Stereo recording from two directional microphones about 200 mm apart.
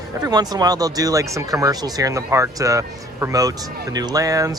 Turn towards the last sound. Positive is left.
turn(degrees=-15)  # may be behind; listen again after turning